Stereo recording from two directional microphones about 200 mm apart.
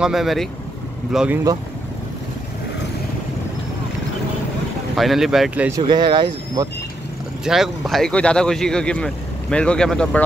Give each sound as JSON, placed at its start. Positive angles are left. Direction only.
{"t": 0.0, "sound": "speech", "side_deg": 0}
{"t": 4.9, "sound": "speech", "side_deg": 0}
{"t": 5.8, "sound": "speech", "side_deg": -20}
{"t": 7.4, "sound": "speech", "side_deg": 0}